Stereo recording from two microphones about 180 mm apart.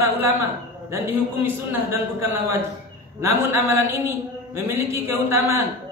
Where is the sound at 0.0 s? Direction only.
15° right (ahead or behind).